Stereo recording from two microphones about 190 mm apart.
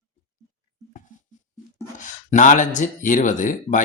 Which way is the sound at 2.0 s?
40° left (ahead or behind).